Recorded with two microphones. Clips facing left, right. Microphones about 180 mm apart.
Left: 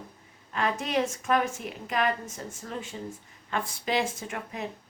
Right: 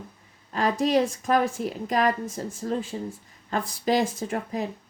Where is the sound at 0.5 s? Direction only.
35° right (ahead or behind).